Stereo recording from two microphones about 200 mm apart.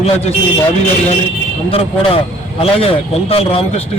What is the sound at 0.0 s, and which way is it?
Speech, 30° left (ahead or behind).